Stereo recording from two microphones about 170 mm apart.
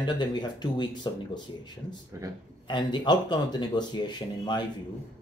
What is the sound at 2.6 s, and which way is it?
Speech, 25° left (ahead or behind).